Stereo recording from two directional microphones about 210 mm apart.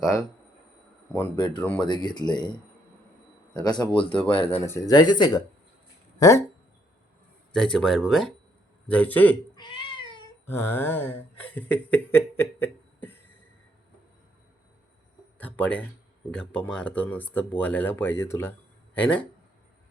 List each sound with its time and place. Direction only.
0.0 s speech: 15° left (ahead or behind)
1.4 s speech: 20° left (ahead or behind)
3.5 s speech: 20° left (ahead or behind)
7.5 s speech: 5° left (ahead or behind)
9.6 s cat: 20° left (ahead or behind)
10.4 s speech: 10° left (ahead or behind)
15.4 s speech: 10° left (ahead or behind)